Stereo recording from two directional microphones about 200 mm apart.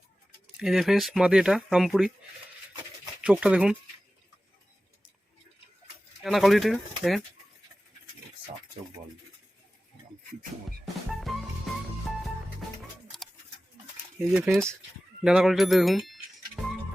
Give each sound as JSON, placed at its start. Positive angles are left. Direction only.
{"t": 0.5, "sound": "speech", "side_deg": 0}
{"t": 3.2, "sound": "speech", "side_deg": -5}
{"t": 6.2, "sound": "speech", "side_deg": 0}
{"t": 11.2, "sound": "music", "side_deg": 0}
{"t": 14.3, "sound": "speech", "side_deg": -5}